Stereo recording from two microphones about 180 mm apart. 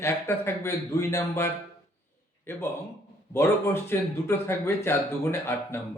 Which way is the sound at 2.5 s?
10° left (ahead or behind).